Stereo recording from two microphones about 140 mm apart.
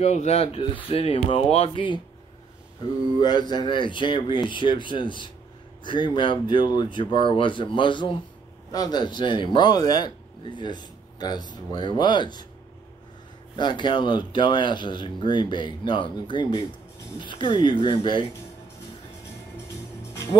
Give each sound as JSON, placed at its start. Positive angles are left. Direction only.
{"t": 0.0, "sound": "speech", "side_deg": 55}
{"t": 3.2, "sound": "speech", "side_deg": 30}
{"t": 13.6, "sound": "speech", "side_deg": 35}